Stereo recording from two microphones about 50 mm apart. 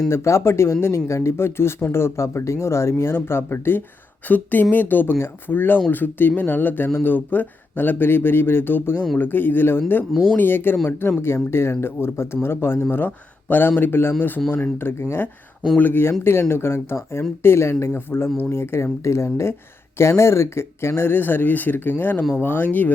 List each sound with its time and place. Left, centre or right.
0.1 s speech: left
4.3 s speech: left
15.8 s speech: left
16.2 s speech: left